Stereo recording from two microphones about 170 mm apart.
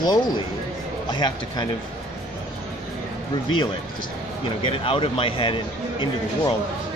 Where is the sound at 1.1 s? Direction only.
25° left (ahead or behind).